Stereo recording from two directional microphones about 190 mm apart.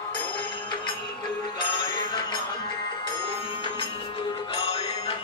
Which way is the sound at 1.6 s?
25° left (ahead or behind).